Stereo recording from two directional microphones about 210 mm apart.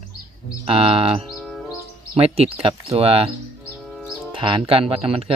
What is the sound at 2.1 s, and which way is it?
Speech, 30° right (ahead or behind).